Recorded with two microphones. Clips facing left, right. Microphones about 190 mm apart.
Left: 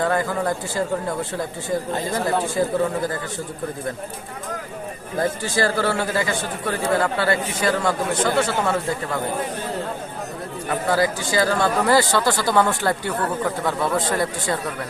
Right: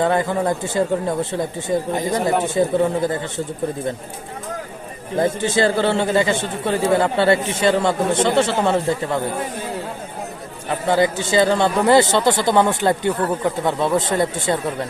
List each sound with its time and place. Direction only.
0.0 s speech: 25° right (ahead or behind)
5.1 s speech: 20° right (ahead or behind)
10.7 s speech: 25° right (ahead or behind)